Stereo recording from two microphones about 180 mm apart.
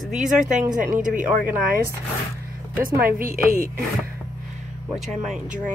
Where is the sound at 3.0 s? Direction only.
50° right (ahead or behind).